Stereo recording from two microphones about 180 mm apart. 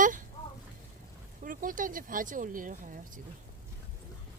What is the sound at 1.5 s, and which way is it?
Speech, 50° right (ahead or behind).